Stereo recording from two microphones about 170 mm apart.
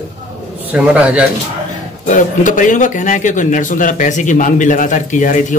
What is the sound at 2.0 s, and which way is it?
Speech, 50° left (ahead or behind).